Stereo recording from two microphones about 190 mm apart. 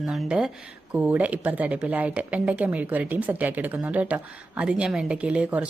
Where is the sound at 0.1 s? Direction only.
5° right (ahead or behind).